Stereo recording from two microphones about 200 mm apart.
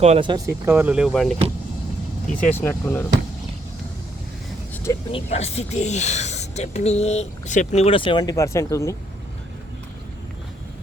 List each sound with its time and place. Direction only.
0.0 s speech: 30° right (ahead or behind); by 1.4 s centre (ahead or behind)
2.4 s speech: 10° left (ahead or behind)
4.7 s vehicle: 15° left (ahead or behind)
5.1 s speech: 30° left (ahead or behind); by 9.0 s 15° left (ahead or behind)